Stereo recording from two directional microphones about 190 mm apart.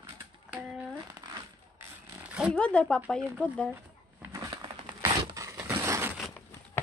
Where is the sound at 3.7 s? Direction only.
15° right (ahead or behind).